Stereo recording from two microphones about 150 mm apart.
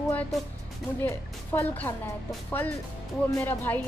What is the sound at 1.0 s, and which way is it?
A woman's voice, 15° left (ahead or behind).